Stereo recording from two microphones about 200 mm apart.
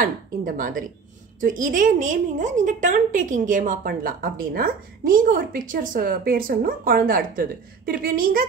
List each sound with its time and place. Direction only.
0.0 s a woman's voice: 45° right (ahead or behind)